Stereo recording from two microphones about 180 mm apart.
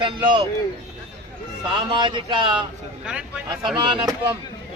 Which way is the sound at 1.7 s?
25° right (ahead or behind).